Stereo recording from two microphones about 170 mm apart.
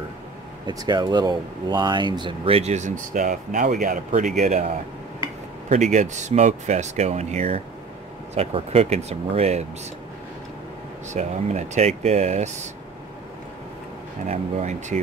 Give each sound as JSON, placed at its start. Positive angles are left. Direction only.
{"t": 0.7, "sound": "speech", "side_deg": -25}
{"t": 11.1, "sound": "speech", "side_deg": -40}
{"t": 14.2, "sound": "speech", "side_deg": -45}